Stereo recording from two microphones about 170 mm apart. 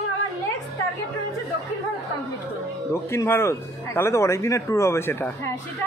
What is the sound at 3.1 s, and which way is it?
A man's voice, 15° left (ahead or behind).